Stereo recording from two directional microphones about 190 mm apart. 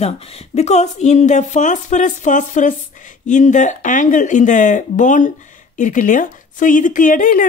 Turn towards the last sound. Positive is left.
turn(degrees=45)  # may be behind; listen again after turning